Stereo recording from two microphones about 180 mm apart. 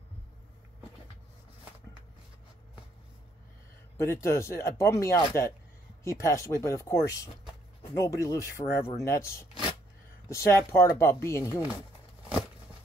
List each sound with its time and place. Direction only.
4.0 s speech: 15° left (ahead or behind)
9.5 s a sound: 25° right (ahead or behind)
10.2 s speech: 15° left (ahead or behind)